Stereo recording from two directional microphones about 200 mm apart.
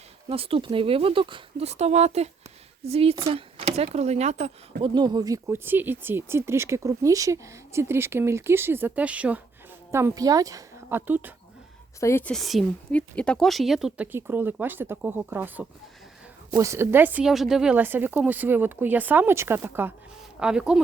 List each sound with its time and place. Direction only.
0.3 s speech: 30° right (ahead or behind)
4.8 s speech: 20° right (ahead or behind)
11.9 s speech: 15° left (ahead or behind); by 20.8 s 5° right (ahead or behind)